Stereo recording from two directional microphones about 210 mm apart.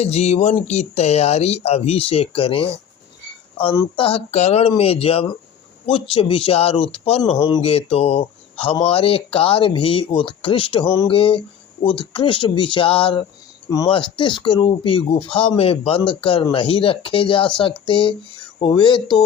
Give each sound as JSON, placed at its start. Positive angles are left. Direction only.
{"t": 0.0, "sound": "speech", "side_deg": 30}